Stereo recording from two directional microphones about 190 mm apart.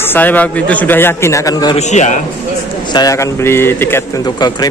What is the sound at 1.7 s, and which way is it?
Speech, 40° left (ahead or behind).